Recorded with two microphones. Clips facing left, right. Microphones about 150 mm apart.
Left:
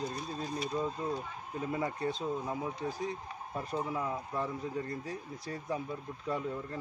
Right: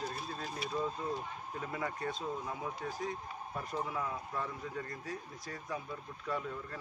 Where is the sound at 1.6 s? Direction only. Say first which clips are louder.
Left 5 dB; 25° left (ahead or behind).